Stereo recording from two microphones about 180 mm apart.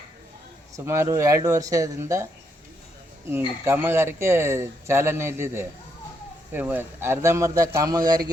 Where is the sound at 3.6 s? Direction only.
15° right (ahead or behind).